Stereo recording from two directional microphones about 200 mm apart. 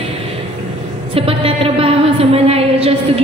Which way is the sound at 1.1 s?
30° right (ahead or behind).